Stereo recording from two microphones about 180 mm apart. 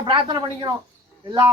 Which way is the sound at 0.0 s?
25° right (ahead or behind).